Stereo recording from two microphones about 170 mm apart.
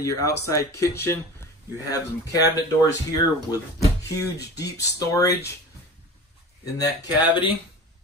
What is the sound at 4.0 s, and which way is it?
Speech, 20° left (ahead or behind).